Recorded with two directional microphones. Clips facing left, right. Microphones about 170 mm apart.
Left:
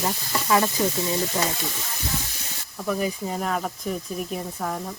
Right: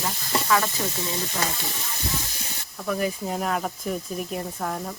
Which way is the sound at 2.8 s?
Centre (ahead or behind).